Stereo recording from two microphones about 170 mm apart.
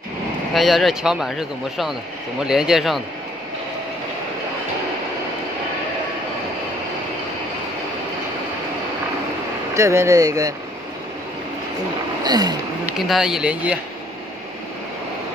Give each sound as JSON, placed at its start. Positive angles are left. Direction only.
{"t": 0.5, "sound": "speech", "side_deg": 0}
{"t": 9.8, "sound": "speech", "side_deg": -15}
{"t": 12.2, "sound": "a sound", "side_deg": -25}
{"t": 12.9, "sound": "speech", "side_deg": 0}